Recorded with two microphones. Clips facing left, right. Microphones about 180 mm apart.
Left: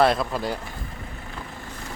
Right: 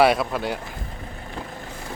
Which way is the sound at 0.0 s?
5° right (ahead or behind).